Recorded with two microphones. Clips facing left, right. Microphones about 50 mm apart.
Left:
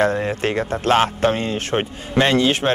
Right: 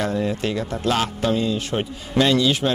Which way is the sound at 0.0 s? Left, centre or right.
Left.